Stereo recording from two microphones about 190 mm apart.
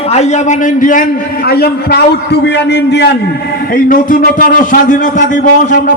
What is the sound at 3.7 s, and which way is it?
A man's voice, 45° left (ahead or behind).